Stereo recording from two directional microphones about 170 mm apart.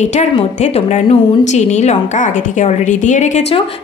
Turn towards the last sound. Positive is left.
turn(degrees=45)  # may be behind; listen again after turning